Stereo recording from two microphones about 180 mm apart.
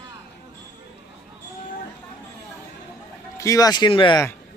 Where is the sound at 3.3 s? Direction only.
20° left (ahead or behind).